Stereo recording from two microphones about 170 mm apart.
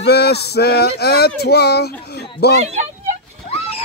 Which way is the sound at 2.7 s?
45° right (ahead or behind).